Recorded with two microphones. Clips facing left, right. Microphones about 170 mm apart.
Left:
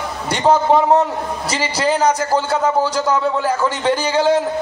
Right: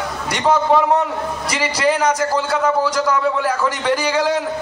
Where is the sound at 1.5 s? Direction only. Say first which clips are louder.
Even; 30° left (ahead or behind).